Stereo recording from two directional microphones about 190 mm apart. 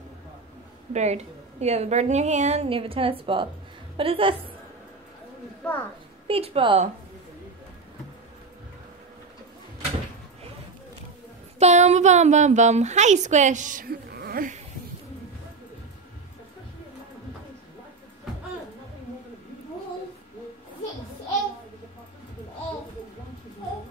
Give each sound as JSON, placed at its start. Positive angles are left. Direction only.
{"t": 0.9, "sound": "a woman's voice", "side_deg": -35}
{"t": 5.6, "sound": "speech", "side_deg": 10}
{"t": 6.2, "sound": "a woman's voice", "side_deg": -30}
{"t": 11.6, "sound": "a woman's voice", "side_deg": -35}